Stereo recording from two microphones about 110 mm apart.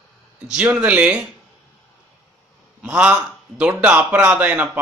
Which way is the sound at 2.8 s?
10° right (ahead or behind).